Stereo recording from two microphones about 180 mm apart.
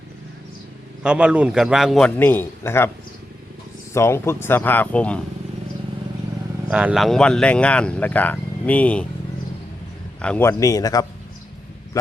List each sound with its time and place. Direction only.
1.0 s a man's voice: 5° right (ahead or behind); by 2.9 s 15° left (ahead or behind)
3.9 s speech: 15° left (ahead or behind)
6.7 s speech: 5° right (ahead or behind)
10.2 s speech: 5° left (ahead or behind)